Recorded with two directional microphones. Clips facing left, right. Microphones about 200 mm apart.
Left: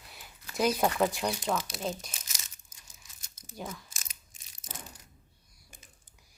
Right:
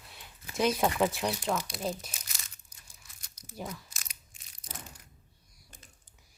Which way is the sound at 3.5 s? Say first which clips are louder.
Even; centre (ahead or behind).